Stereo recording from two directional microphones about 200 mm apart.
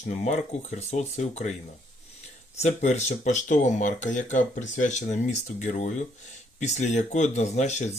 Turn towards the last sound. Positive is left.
turn(degrees=35)  # may be behind; listen again after turning